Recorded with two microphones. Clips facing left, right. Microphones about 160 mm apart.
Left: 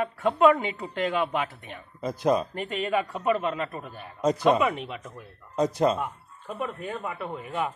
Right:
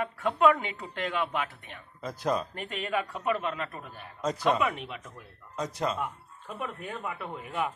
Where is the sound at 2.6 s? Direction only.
Centre (ahead or behind).